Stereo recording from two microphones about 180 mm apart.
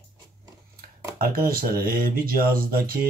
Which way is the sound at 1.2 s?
55° right (ahead or behind).